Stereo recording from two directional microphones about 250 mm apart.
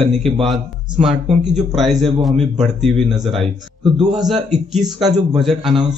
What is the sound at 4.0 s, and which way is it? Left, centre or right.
Speech, centre.